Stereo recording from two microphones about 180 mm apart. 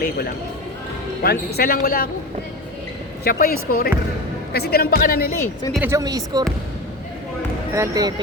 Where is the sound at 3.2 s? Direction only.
55° left (ahead or behind).